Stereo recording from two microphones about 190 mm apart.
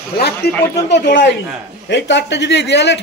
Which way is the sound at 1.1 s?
70° left (ahead or behind).